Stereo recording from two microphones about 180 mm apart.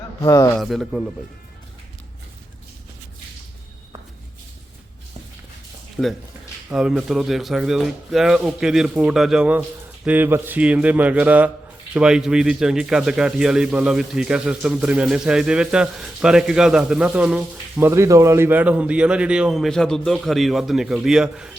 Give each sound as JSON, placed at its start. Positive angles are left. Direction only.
{"t": 0.2, "sound": "a man's voice", "side_deg": 20}
{"t": 0.5, "sound": "speech", "side_deg": 0}
{"t": 6.0, "sound": "speech", "side_deg": 5}
{"t": 6.7, "sound": "speech", "side_deg": -5}